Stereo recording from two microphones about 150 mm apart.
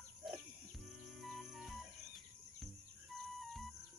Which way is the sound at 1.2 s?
Centre (ahead or behind).